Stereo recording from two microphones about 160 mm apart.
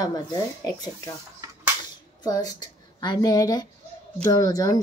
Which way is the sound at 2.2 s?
25° left (ahead or behind).